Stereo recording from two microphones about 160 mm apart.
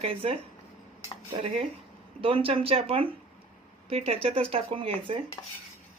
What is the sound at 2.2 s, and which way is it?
Speech, 35° right (ahead or behind).